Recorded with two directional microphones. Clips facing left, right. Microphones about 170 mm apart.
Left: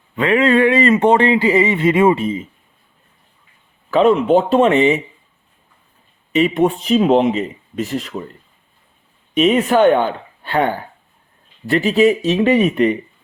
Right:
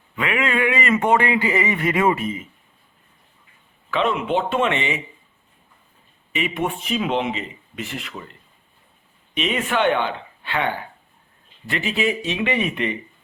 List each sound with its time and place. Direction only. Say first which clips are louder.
0.2 s speech: left 9 dB; 35° left (ahead or behind)
3.9 s speech: left 9 dB; 40° left (ahead or behind)
6.3 s speech: left 10 dB; 40° left (ahead or behind)
9.3 s speech: left 9 dB; 45° left (ahead or behind)